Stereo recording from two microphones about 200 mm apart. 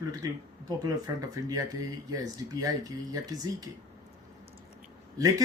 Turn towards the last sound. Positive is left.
turn(degrees=-15)  # may be behind; listen again after turning